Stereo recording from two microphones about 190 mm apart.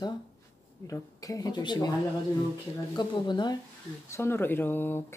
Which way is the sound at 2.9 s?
25° left (ahead or behind).